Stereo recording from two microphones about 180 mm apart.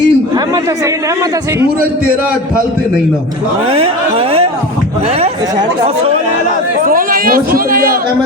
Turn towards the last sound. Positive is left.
turn(degrees=-55)  # may be behind; listen again after turning